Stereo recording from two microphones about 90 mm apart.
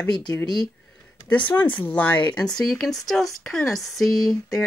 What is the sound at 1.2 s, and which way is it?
Speech, 15° left (ahead or behind).